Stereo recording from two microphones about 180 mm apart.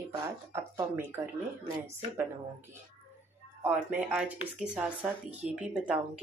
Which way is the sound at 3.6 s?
10° right (ahead or behind).